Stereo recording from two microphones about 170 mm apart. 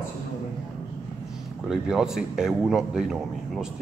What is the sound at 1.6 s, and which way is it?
A man's voice, 5° right (ahead or behind).